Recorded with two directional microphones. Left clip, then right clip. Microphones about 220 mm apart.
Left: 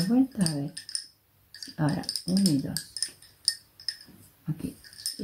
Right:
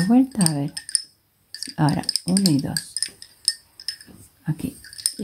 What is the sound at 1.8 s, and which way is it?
Speech, 45° right (ahead or behind).